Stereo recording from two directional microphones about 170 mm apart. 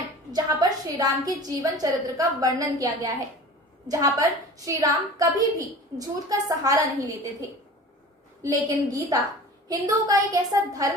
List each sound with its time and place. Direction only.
0.3 s a woman's voice: 20° right (ahead or behind)
8.4 s a woman's voice: 20° right (ahead or behind)